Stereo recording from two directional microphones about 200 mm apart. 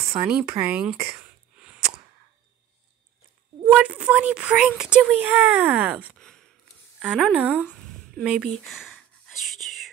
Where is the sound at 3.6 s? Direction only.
5° right (ahead or behind).